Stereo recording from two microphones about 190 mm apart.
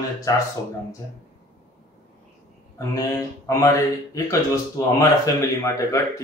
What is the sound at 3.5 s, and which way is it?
A man's voice, 15° left (ahead or behind).